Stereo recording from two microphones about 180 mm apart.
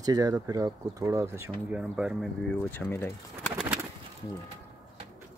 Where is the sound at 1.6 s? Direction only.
5° right (ahead or behind); by 3.5 s 10° left (ahead or behind).